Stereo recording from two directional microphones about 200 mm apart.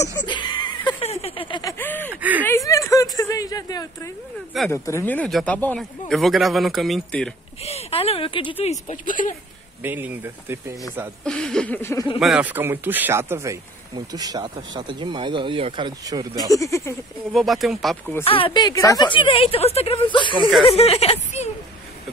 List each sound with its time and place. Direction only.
0.0 s a sound: 20° left (ahead or behind)
2.0 s speech: 10° right (ahead or behind)
2.4 s speech: 15° left (ahead or behind)
7.6 s speech: 30° left (ahead or behind)
9.8 s speech: 10° right (ahead or behind)
11.2 s speech: 5° left (ahead or behind)
12.2 s speech: 5° right (ahead or behind)
16.4 s speech: 15° left (ahead or behind)
17.3 s speech: centre (ahead or behind)
18.2 s speech: 25° left (ahead or behind)